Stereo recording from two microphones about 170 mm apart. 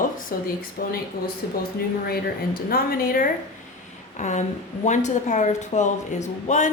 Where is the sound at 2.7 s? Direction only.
60° left (ahead or behind).